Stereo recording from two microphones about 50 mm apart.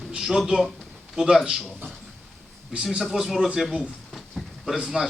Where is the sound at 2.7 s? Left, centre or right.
Centre.